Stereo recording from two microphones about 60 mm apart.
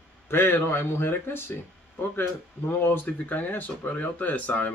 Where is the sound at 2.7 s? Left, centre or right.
Left.